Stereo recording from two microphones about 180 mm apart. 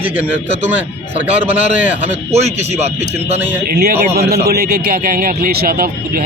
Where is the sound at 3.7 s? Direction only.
60° right (ahead or behind).